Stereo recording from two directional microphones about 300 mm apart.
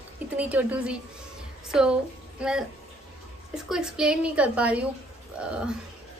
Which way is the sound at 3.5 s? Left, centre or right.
Centre.